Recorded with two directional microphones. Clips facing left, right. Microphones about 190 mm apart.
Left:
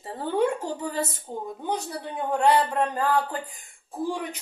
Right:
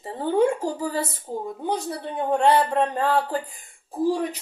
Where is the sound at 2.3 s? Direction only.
25° right (ahead or behind).